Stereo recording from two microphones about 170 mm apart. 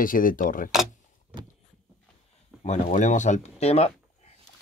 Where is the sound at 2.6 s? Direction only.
45° left (ahead or behind).